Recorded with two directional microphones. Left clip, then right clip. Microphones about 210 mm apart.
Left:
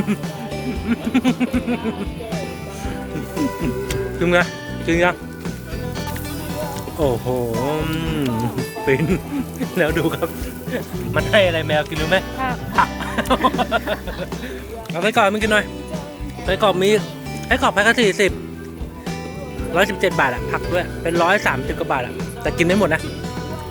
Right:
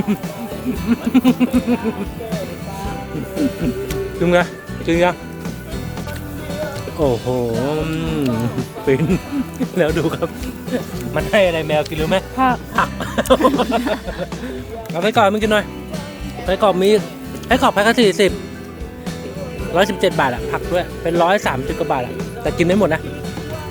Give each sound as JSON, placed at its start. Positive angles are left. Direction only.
{"t": 0.1, "sound": "speech", "side_deg": 0}
{"t": 3.8, "sound": "music", "side_deg": -5}
{"t": 4.9, "sound": "speech", "side_deg": 0}
{"t": 7.0, "sound": "speech", "side_deg": 0}
{"t": 12.4, "sound": "music", "side_deg": -35}
{"t": 12.7, "sound": "speech", "side_deg": 0}
{"t": 14.9, "sound": "speech", "side_deg": -5}
{"t": 19.7, "sound": "speech", "side_deg": -10}